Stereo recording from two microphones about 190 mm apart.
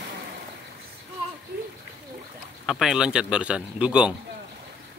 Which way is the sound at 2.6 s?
Centre (ahead or behind).